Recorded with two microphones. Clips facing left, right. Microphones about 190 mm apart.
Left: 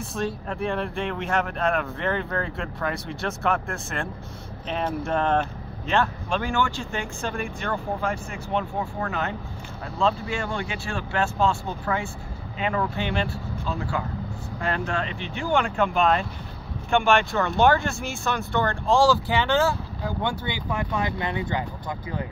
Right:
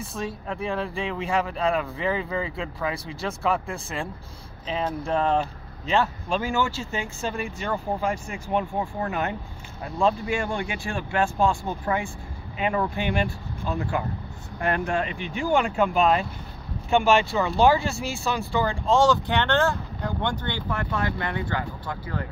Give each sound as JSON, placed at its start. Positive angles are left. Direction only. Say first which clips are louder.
{"t": 0.5, "sound": "speech", "louder": "left 1 dB", "side_deg": 0}
{"t": 4.6, "sound": "speech", "louder": "even", "side_deg": 0}
{"t": 17.9, "sound": "speech", "louder": "right 1 dB", "side_deg": -35}
{"t": 18.5, "sound": "speech", "louder": "even", "side_deg": -5}